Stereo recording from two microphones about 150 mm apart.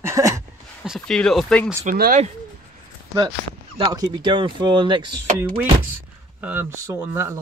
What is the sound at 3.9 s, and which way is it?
Speech, 25° right (ahead or behind).